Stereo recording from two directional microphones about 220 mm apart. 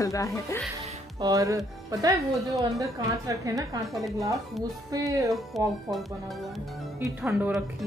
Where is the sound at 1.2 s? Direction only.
15° right (ahead or behind).